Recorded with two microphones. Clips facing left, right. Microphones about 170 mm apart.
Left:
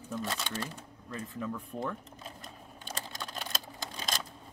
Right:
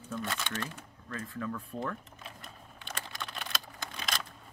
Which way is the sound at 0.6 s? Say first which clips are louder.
Even; 15° left (ahead or behind).